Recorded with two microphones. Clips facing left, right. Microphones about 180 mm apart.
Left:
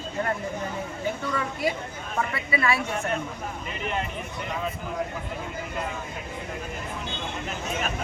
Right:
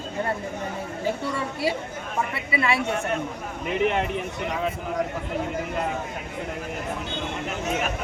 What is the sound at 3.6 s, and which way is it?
Speech, 65° right (ahead or behind).